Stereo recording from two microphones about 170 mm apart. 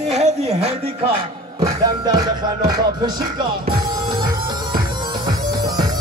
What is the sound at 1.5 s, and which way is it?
Music, 25° right (ahead or behind).